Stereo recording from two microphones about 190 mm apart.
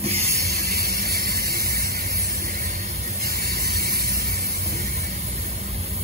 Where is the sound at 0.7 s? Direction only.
55° right (ahead or behind).